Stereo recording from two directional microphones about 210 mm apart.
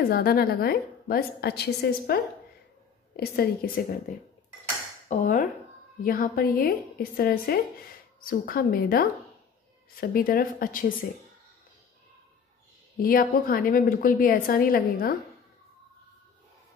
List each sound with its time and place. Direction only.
0.0 s a woman's voice: 45° left (ahead or behind)
13.0 s a woman's voice: 45° left (ahead or behind)